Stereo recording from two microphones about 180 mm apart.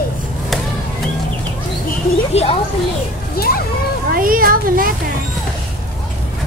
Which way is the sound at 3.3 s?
55° left (ahead or behind).